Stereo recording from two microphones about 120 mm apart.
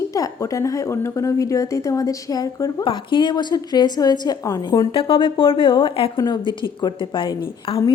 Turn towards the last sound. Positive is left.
turn(degrees=45)  # may be behind; listen again after turning